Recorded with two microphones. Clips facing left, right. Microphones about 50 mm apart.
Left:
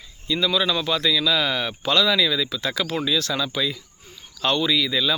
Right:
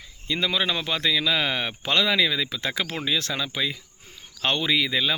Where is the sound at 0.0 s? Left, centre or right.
Right.